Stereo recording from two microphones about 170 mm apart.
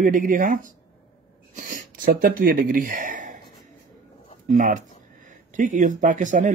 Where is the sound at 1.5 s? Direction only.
50° right (ahead or behind).